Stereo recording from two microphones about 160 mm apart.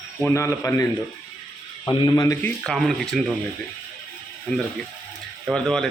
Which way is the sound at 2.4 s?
5° left (ahead or behind).